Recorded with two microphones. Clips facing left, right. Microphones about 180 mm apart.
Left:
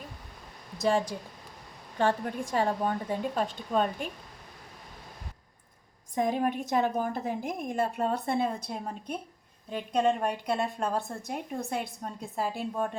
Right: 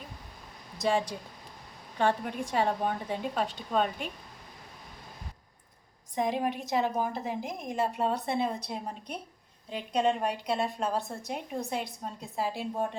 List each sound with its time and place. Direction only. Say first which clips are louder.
0.8 s a woman's voice: left 2 dB; 45° left (ahead or behind)
6.1 s a woman's voice: left 2 dB; 50° left (ahead or behind)